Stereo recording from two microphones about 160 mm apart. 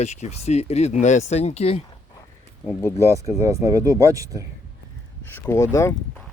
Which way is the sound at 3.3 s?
20° right (ahead or behind).